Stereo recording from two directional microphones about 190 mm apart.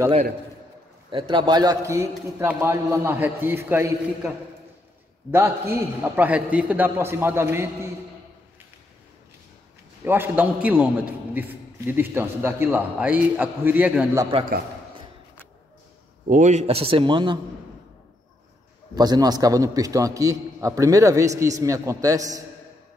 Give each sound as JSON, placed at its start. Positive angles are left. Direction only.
{"t": 1.1, "sound": "a man's voice", "side_deg": -25}
{"t": 5.3, "sound": "a man's voice", "side_deg": -10}
{"t": 10.0, "sound": "a man's voice", "side_deg": -10}
{"t": 16.3, "sound": "a man's voice", "side_deg": -40}
{"t": 18.9, "sound": "a man's voice", "side_deg": -20}